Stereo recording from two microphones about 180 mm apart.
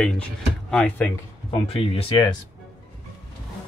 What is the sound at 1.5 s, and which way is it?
Speech, 35° left (ahead or behind).